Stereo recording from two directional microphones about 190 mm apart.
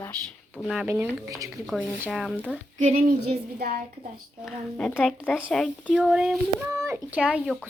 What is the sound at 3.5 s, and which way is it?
Speech, 55° right (ahead or behind).